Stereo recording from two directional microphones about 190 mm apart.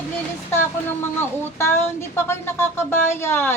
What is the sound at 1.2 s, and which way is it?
Speech, 15° left (ahead or behind).